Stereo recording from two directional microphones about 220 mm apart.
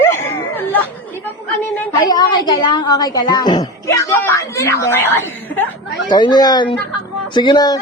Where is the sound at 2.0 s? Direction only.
20° left (ahead or behind).